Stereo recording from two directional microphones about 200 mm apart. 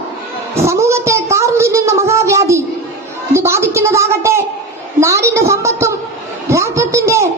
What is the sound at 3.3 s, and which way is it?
A woman's voice, 15° right (ahead or behind).